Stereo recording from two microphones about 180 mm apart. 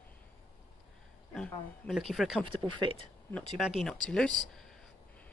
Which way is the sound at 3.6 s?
Centre (ahead or behind).